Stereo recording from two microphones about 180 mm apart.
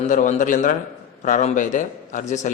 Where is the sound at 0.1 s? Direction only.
45° left (ahead or behind).